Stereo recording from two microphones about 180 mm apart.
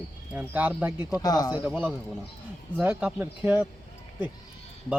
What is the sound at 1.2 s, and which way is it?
Speech, 20° left (ahead or behind).